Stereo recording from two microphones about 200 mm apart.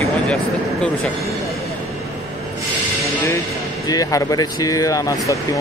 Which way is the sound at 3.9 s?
15° left (ahead or behind).